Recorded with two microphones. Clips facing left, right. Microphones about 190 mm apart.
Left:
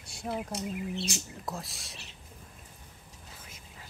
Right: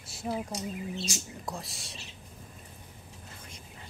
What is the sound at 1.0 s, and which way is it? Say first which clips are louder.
Speech: left 1 dB; 60° left (ahead or behind).